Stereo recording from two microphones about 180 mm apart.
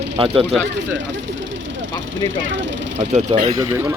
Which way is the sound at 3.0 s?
40° right (ahead or behind).